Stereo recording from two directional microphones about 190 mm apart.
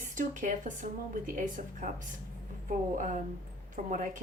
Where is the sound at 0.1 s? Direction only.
40° right (ahead or behind).